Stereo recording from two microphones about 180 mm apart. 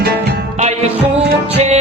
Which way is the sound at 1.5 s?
35° right (ahead or behind).